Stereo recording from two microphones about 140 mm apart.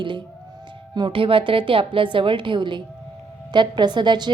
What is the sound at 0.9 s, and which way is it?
A woman's voice, 35° right (ahead or behind).